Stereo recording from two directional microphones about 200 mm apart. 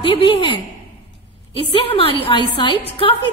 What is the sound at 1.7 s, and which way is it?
A woman's voice, 30° left (ahead or behind).